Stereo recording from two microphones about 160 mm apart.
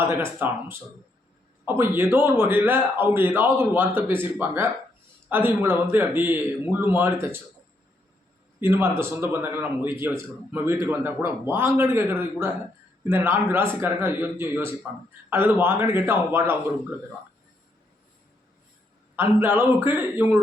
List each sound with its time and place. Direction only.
0.0 s a man's voice: 15° right (ahead or behind)
8.6 s a man's voice: 15° right (ahead or behind)
19.1 s a man's voice: 15° right (ahead or behind)